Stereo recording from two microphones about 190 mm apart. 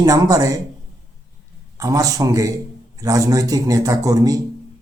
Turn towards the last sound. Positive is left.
turn(degrees=-20)  # may be behind; listen again after turning